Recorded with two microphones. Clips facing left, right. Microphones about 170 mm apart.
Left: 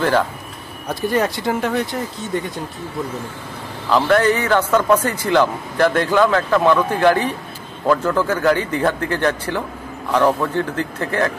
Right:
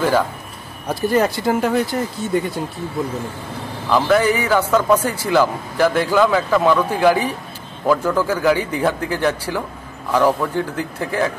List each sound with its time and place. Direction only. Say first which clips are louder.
0.8 s speech: right 2 dB; centre (ahead or behind)
3.9 s a man's voice: even; 5° right (ahead or behind)